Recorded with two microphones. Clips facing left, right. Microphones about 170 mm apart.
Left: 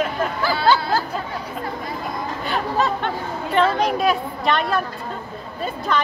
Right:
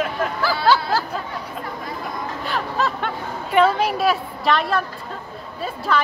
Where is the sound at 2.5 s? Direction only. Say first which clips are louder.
Left 3 dB; centre (ahead or behind).